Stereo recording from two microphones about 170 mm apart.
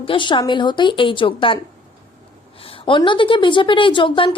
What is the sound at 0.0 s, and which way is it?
A woman's voice, 30° left (ahead or behind).